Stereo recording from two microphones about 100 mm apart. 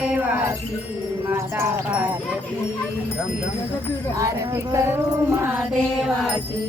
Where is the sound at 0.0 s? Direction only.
15° right (ahead or behind).